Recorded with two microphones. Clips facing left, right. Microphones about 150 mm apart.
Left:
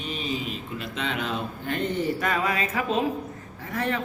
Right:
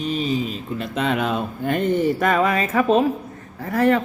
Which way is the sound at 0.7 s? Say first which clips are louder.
Right 9 dB; 50° right (ahead or behind).